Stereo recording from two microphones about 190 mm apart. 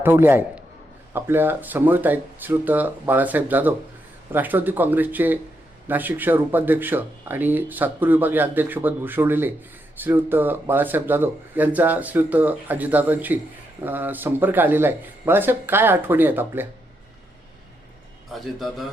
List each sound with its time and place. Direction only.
0.0 s a man's voice: 10° right (ahead or behind)
18.3 s a man's voice: centre (ahead or behind)